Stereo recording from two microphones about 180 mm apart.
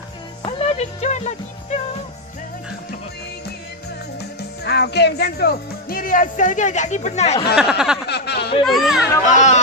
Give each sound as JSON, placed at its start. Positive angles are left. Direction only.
{"t": 0.4, "sound": "speech", "side_deg": 35}
{"t": 4.4, "sound": "speech", "side_deg": 65}
{"t": 7.5, "sound": "speech", "side_deg": -5}
{"t": 8.1, "sound": "a sound", "side_deg": 65}
{"t": 8.6, "sound": "speech", "side_deg": 0}
{"t": 9.2, "sound": "speech", "side_deg": 45}